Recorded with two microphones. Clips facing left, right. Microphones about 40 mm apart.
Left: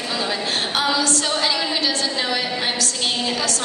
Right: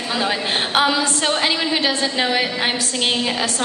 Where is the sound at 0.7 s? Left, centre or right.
Right.